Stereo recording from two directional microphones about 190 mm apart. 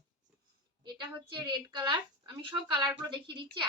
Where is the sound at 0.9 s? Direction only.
25° right (ahead or behind).